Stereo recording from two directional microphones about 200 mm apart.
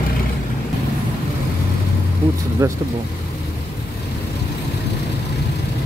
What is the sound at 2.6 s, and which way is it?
Speech, 15° right (ahead or behind).